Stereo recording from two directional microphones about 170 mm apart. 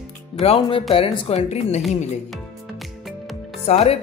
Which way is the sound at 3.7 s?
40° left (ahead or behind).